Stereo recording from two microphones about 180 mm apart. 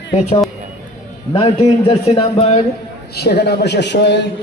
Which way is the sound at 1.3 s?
30° left (ahead or behind).